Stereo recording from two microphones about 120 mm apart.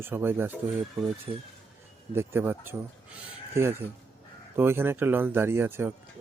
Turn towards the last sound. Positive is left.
turn(degrees=-20)  # may be behind; listen again after turning